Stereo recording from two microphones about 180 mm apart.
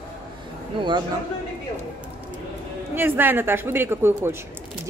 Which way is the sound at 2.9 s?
10° right (ahead or behind).